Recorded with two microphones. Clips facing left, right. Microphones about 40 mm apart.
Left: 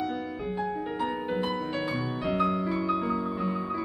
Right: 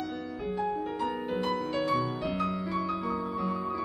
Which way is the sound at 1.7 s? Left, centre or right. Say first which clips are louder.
Right 2 dB; centre.